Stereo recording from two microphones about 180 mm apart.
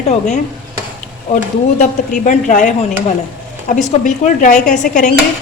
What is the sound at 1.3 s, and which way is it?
Speech, 45° left (ahead or behind).